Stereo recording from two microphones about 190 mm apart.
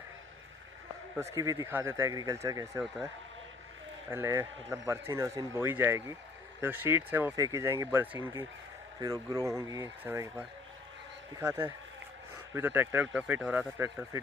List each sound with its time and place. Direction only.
1.1 s speech: 15° right (ahead or behind)
4.1 s speech: 15° right (ahead or behind)